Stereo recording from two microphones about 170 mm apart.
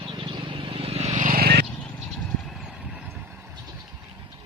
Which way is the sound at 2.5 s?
Centre (ahead or behind).